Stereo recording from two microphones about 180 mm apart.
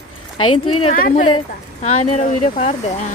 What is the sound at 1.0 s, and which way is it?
Speech, 50° left (ahead or behind).